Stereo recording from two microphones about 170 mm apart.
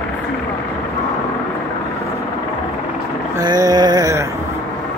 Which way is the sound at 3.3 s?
20° right (ahead or behind).